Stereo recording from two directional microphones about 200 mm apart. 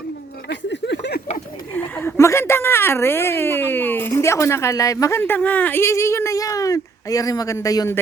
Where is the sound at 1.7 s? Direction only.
10° left (ahead or behind).